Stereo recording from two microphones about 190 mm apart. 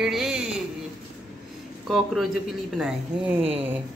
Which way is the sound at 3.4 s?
30° right (ahead or behind).